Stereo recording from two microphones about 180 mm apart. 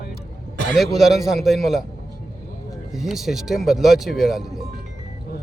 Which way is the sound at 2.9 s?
Centre (ahead or behind).